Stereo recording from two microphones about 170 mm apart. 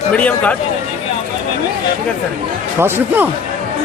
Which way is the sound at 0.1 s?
10° left (ahead or behind).